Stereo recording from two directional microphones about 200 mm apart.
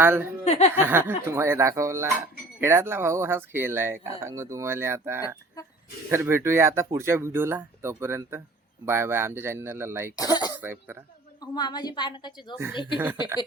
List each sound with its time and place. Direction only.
0.0 s speech: 10° right (ahead or behind)
0.4 s speech: 30° left (ahead or behind)
0.8 s speech: 10° right (ahead or behind)
10.2 s a woman's voice: 20° left (ahead or behind)
10.6 s speech: 10° right (ahead or behind)
11.3 s a woman's voice: 20° left (ahead or behind)